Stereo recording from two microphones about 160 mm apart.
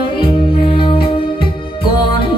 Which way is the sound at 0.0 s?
30° left (ahead or behind).